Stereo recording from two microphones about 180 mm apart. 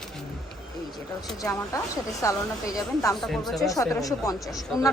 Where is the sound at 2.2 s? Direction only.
15° left (ahead or behind).